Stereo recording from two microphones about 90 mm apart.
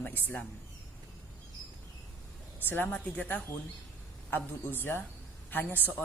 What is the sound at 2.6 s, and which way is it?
A man's voice, 20° left (ahead or behind).